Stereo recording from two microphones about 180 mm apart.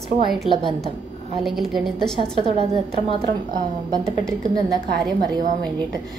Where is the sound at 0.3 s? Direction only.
Centre (ahead or behind).